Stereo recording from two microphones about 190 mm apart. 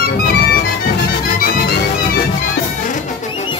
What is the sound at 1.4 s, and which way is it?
Music, 50° left (ahead or behind).